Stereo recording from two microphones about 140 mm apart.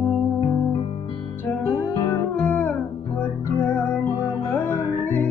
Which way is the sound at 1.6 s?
15° left (ahead or behind).